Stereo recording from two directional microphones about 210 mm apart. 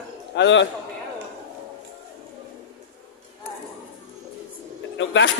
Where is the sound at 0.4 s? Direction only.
60° left (ahead or behind).